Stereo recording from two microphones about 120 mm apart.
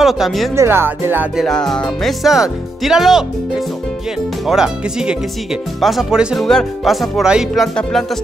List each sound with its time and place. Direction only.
0.0 s speech: centre (ahead or behind)
0.6 s speech: 20° right (ahead or behind)
1.3 s speech: 5° left (ahead or behind)